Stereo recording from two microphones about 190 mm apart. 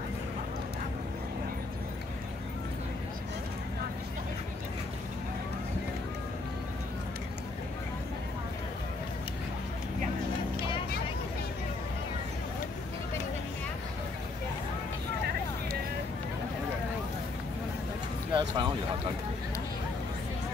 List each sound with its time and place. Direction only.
18.3 s speech: 25° right (ahead or behind)